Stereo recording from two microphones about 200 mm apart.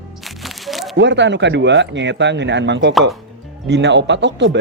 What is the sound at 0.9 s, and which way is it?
Speech, 60° right (ahead or behind).